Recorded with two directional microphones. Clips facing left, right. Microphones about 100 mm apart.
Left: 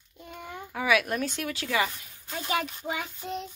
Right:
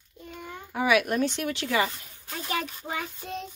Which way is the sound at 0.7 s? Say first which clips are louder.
Right 3 dB; 30° right (ahead or behind).